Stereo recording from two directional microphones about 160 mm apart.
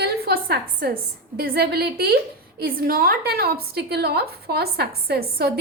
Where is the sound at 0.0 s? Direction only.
85° right.